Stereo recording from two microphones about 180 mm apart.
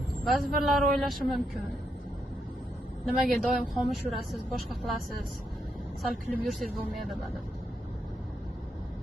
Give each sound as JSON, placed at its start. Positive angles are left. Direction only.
{"t": 0.3, "sound": "a woman's voice", "side_deg": 0}
{"t": 3.1, "sound": "a woman's voice", "side_deg": 0}